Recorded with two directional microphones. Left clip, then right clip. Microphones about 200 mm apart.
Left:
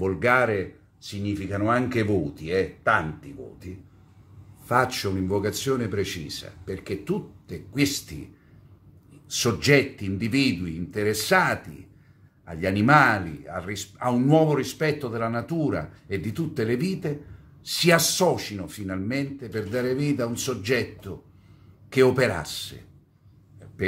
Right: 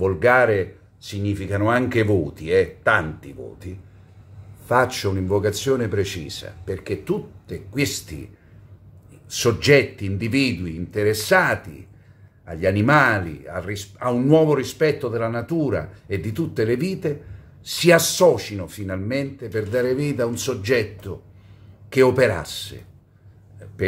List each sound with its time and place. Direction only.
0.0 s speech: centre (ahead or behind)
9.3 s speech: 5° right (ahead or behind)